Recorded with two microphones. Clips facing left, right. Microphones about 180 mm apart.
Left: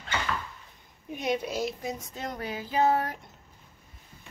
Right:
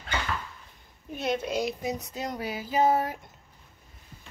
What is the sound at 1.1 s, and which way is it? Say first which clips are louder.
Speech: right 1 dB; 10° left (ahead or behind).